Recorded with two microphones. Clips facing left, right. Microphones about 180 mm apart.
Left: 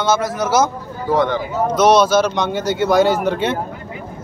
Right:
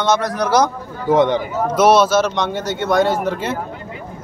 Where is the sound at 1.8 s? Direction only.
5° right (ahead or behind).